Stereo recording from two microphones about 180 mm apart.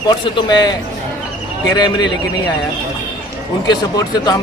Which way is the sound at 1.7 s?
25° left (ahead or behind).